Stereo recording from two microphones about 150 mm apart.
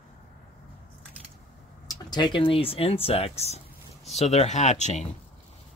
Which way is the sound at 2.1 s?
30° left (ahead or behind).